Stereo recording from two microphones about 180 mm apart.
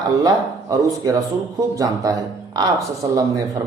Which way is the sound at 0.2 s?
20° right (ahead or behind).